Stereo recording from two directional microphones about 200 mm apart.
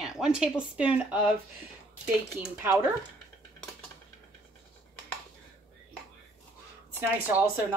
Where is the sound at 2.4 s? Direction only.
10° right (ahead or behind).